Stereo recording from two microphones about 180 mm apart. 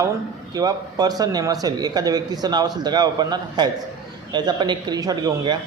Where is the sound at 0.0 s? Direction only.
20° right (ahead or behind).